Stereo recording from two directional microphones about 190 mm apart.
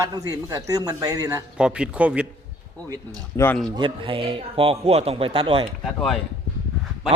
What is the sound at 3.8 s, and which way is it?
Speech, 25° right (ahead or behind).